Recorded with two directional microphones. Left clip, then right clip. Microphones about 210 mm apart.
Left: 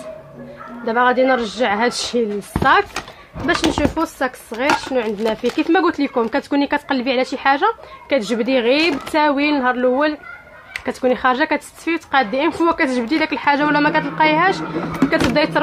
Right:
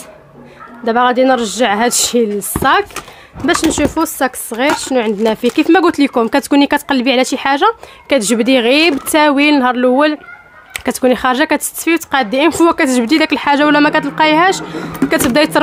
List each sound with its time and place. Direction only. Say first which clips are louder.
0.8 s speech: right 4 dB; 50° right (ahead or behind)